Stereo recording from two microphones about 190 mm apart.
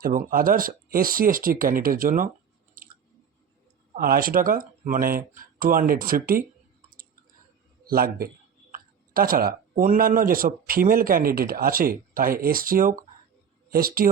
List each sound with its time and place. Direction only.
0.0 s speech: 45° right (ahead or behind)
2.8 s chewing: 50° right (ahead or behind)
3.9 s speech: 50° right (ahead or behind)
7.9 s speech: 50° right (ahead or behind)